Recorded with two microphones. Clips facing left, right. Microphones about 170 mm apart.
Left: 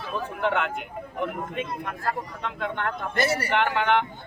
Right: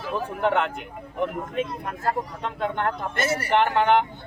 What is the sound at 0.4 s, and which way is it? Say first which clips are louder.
Speech: right 3 dB; 35° right (ahead or behind).